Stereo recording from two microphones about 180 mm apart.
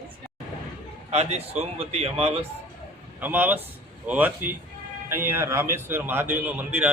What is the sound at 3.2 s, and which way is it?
A man's voice, 10° right (ahead or behind).